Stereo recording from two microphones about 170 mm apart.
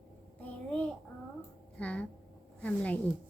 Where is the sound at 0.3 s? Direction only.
10° left (ahead or behind).